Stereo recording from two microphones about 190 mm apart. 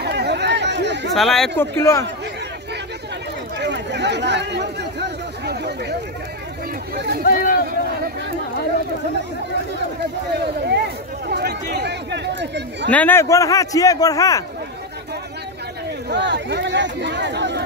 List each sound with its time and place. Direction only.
0.0 s chatter: 60° right (ahead or behind)
1.1 s speech: centre (ahead or behind)
1.6 s a man's voice: 15° left (ahead or behind)
3.5 s chatter: 65° right (ahead or behind)
7.0 s speech: 60° right (ahead or behind)
7.2 s speech: 45° left (ahead or behind)
10.3 s speech: 60° right (ahead or behind)
12.9 s a man's voice: 10° left (ahead or behind)
16.1 s speech: 65° right (ahead or behind)